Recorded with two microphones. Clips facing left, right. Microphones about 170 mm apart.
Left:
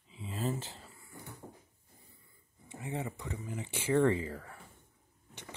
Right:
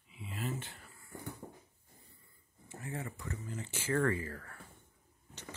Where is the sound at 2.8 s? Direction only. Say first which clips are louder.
Left 4 dB; 20° left (ahead or behind).